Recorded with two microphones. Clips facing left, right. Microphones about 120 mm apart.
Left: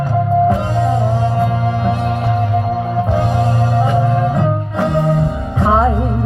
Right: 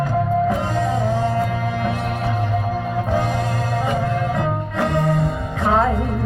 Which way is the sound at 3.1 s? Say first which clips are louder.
Left 3 dB; 15° left (ahead or behind).